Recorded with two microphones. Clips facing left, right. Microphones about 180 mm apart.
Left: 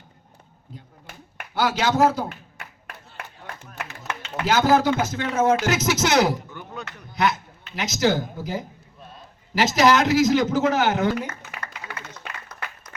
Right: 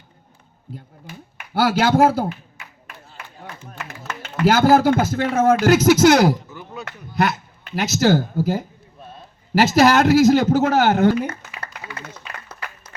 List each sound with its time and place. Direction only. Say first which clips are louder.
1.5 s speech: right 5 dB; 55° right (ahead or behind)
2.6 s a sound: left 1 dB; 65° left (ahead or behind)
4.2 s speech: right 5 dB; 55° right (ahead or behind)
6.5 s chop: right 2 dB; 5° right (ahead or behind)
6.8 s a sound: right 2 dB; 55° right (ahead or behind)
7.9 s speech: right 5 dB; 50° right (ahead or behind)
9.7 s speech: right 4 dB; 50° right (ahead or behind)